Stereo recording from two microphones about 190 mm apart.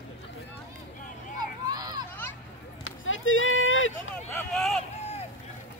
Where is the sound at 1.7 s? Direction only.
20° right (ahead or behind).